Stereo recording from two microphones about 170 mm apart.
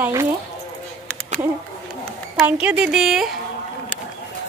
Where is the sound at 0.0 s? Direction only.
15° right (ahead or behind).